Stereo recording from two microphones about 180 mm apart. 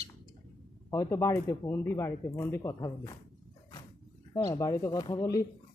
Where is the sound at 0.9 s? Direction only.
15° left (ahead or behind).